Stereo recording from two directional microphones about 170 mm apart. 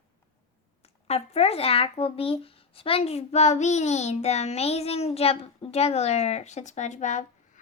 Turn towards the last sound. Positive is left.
turn(degrees=45)  # may be behind; listen again after turning